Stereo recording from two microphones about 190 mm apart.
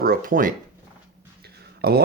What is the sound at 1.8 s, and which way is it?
Speech, 55° right (ahead or behind).